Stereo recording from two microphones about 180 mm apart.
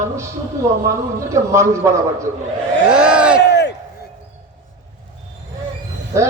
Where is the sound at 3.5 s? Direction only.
70° left (ahead or behind).